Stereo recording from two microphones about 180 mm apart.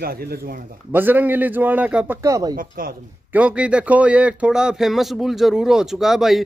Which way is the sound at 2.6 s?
50° right (ahead or behind).